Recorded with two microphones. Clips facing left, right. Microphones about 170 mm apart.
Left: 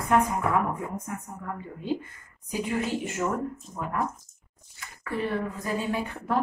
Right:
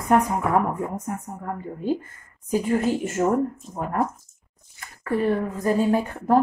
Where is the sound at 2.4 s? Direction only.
45° right (ahead or behind).